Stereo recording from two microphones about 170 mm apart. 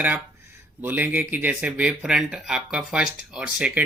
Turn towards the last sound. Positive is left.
turn(degrees=-5)  # may be behind; listen again after turning